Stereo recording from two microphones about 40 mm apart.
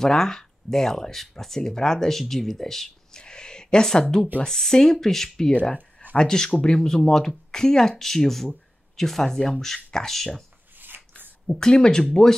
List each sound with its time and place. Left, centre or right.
0.0 s speech: centre
3.2 s a sound: centre
4.5 s speech: centre
5.5 s speech: left
6.1 s speech: centre
10.8 s rub: right
11.6 s speech: left